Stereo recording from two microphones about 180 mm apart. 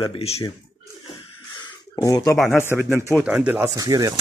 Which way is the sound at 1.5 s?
20° left (ahead or behind).